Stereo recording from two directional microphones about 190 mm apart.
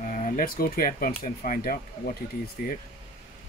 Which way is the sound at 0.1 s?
45° left (ahead or behind).